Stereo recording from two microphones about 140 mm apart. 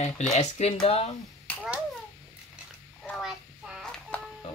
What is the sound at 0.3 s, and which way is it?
Speech, 50° left (ahead or behind).